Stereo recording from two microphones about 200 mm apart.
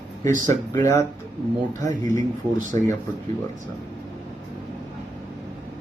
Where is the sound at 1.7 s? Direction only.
40° right (ahead or behind).